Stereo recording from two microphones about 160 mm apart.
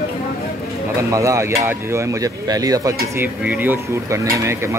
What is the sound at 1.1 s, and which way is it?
Speech, 20° right (ahead or behind).